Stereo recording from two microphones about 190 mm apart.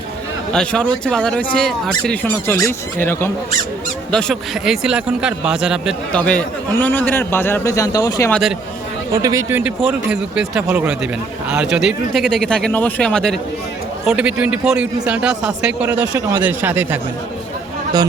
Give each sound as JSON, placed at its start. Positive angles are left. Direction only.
{"t": 0.5, "sound": "speech", "side_deg": 5}
{"t": 8.3, "sound": "speech", "side_deg": 0}
{"t": 9.2, "sound": "a man's voice", "side_deg": -15}